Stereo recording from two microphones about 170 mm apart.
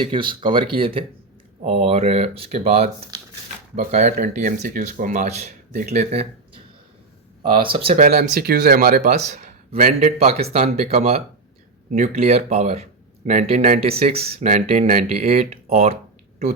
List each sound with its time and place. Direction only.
0.0 s speech: 30° right (ahead or behind)
3.8 s speech: 50° right (ahead or behind)
7.5 s speech: 30° right (ahead or behind)
7.9 s speech: 50° right (ahead or behind)
9.3 s speech: 45° right (ahead or behind)